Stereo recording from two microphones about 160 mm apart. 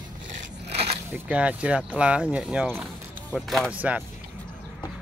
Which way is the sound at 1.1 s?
10° right (ahead or behind).